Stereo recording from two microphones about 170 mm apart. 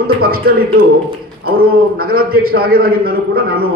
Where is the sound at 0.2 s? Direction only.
60° right (ahead or behind).